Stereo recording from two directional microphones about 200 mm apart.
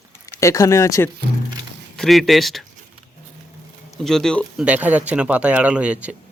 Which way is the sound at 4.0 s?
Centre (ahead or behind).